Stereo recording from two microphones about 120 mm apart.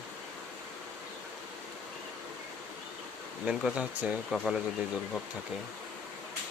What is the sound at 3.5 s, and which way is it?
Speech, 10° right (ahead or behind).